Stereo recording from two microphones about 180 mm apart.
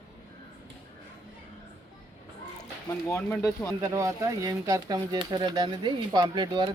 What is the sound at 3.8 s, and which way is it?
Speech, 15° right (ahead or behind).